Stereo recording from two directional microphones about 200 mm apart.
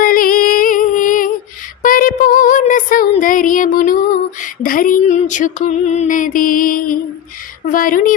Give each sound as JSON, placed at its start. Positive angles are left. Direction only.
{"t": 0.0, "sound": "music", "side_deg": 45}
{"t": 1.8, "sound": "a sound", "side_deg": 45}
{"t": 7.7, "sound": "a woman's voice", "side_deg": 45}